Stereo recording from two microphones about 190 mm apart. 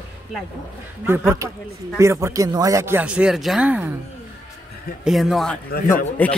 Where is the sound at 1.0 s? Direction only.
10° right (ahead or behind).